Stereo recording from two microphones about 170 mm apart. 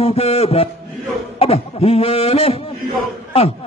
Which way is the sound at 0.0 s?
35° left (ahead or behind).